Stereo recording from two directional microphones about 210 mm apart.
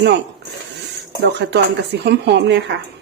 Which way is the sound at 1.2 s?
55° right (ahead or behind).